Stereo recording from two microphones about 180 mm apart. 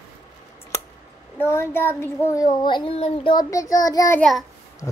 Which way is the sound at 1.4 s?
15° left (ahead or behind).